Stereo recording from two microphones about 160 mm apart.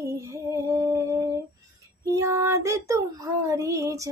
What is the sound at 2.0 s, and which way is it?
Child singing, 20° right (ahead or behind).